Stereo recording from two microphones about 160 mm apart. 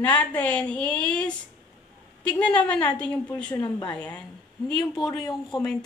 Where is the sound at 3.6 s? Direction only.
30° left (ahead or behind).